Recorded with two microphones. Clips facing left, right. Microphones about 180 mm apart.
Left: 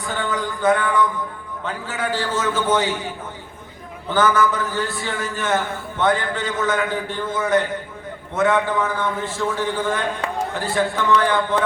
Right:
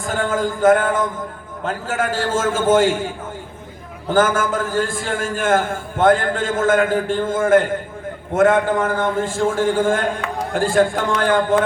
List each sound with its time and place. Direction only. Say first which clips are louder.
0.0 s a man's voice: right 5 dB; 45° right (ahead or behind)
4.1 s a man's voice: right 1 dB; 50° right (ahead or behind)